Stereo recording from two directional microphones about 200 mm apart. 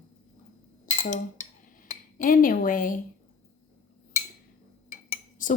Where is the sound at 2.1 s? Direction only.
45° left (ahead or behind).